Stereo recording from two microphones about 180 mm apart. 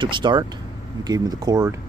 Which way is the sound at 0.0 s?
25° right (ahead or behind).